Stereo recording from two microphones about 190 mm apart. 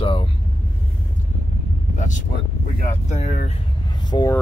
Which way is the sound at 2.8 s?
35° left (ahead or behind).